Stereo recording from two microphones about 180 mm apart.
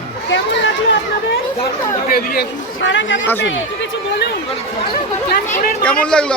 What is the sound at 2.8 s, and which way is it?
Speech, 90° left.